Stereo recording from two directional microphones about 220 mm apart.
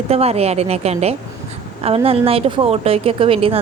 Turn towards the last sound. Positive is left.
turn(degrees=-25)  # may be behind; listen again after turning